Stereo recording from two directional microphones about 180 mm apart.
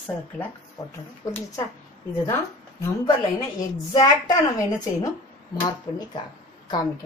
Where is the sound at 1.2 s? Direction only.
20° left (ahead or behind).